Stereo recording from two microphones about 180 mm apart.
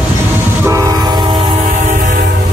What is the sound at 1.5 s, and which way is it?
Train, 40° right (ahead or behind).